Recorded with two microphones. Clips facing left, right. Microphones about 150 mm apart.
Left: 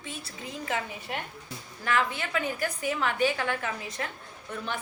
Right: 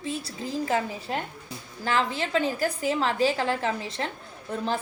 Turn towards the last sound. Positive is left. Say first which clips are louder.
# right 6 dB
turn(degrees=-30)  # may be behind; listen again after turning